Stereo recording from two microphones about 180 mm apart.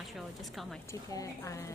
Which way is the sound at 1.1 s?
15° left (ahead or behind).